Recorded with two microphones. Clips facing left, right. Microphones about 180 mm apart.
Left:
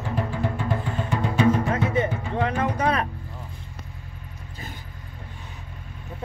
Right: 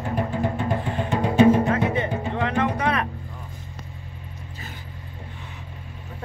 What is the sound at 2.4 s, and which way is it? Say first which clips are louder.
Music: even; 35° left (ahead or behind).